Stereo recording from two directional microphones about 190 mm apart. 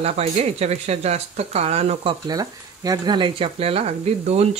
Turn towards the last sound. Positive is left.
turn(degrees=-35)  # may be behind; listen again after turning